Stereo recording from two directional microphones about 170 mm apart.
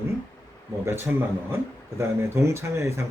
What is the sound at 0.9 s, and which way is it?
Speech, 15° right (ahead or behind).